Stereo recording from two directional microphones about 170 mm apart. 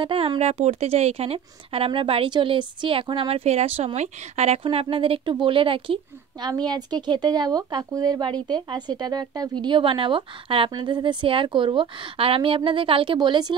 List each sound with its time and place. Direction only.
0.0 s speech: 30° right (ahead or behind)